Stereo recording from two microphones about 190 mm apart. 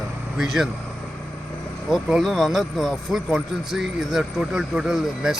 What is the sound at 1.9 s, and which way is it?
Speech, centre (ahead or behind).